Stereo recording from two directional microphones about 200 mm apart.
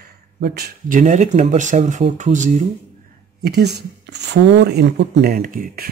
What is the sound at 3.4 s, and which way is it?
Speech, 55° right (ahead or behind).